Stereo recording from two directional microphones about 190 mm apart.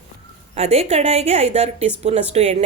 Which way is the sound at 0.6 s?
35° right (ahead or behind).